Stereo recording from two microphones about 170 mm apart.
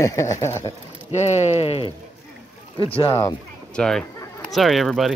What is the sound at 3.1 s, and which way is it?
Speech, 15° left (ahead or behind).